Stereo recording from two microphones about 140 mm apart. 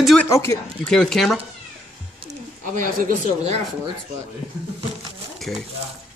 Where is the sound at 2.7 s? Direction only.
70° right (ahead or behind).